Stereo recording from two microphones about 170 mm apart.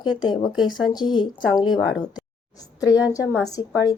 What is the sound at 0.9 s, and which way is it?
Speech, 25° left (ahead or behind).